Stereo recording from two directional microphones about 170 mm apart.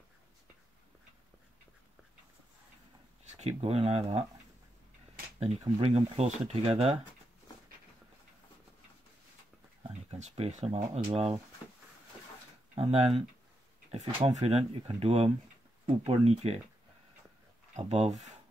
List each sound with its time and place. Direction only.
3.3 s speech: 40° right (ahead or behind)
5.4 s speech: 35° right (ahead or behind)
10.1 s a sound: 40° right (ahead or behind)
12.7 s speech: 35° right (ahead or behind)
17.7 s speech: 40° right (ahead or behind)